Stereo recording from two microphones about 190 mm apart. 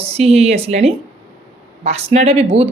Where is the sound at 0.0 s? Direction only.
35° right (ahead or behind).